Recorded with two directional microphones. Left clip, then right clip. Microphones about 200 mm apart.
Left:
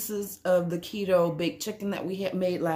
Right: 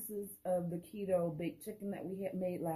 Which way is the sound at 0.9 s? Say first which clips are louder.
Left 11 dB; 15° left (ahead or behind).